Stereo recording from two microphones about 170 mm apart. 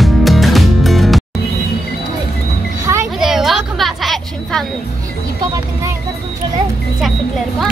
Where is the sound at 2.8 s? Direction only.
15° right (ahead or behind).